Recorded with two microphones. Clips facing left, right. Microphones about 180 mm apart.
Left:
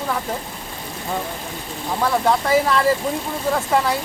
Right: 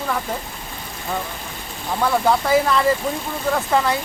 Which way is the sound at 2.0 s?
Centre (ahead or behind).